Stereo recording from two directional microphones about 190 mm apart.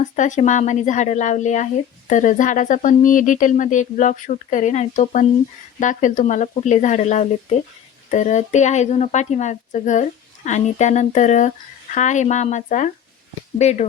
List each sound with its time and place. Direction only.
0.0 s a woman's voice: 40° left (ahead or behind)